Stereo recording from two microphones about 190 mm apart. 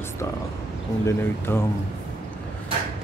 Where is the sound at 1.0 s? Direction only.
10° left (ahead or behind).